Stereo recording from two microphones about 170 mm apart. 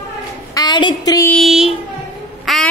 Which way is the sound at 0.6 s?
25° left (ahead or behind).